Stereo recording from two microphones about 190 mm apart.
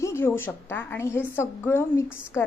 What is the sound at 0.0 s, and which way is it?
A woman's voice, 15° left (ahead or behind).